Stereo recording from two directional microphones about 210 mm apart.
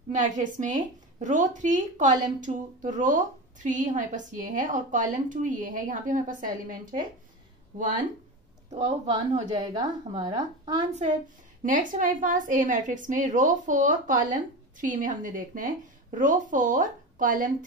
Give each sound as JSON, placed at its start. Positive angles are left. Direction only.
{"t": 0.2, "sound": "a woman's voice", "side_deg": -40}
{"t": 8.6, "sound": "a woman's voice", "side_deg": -30}
{"t": 9.5, "sound": "a woman's voice", "side_deg": -20}
{"t": 11.6, "sound": "a woman's voice", "side_deg": -40}